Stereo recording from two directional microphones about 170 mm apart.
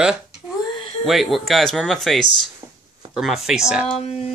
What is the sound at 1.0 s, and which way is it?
Speech, centre (ahead or behind).